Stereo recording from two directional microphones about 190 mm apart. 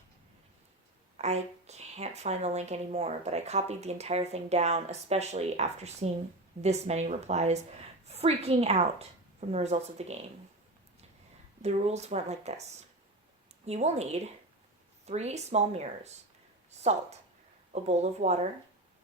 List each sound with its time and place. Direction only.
1.1 s a woman's voice: 35° right (ahead or behind)
11.6 s speech: 35° right (ahead or behind)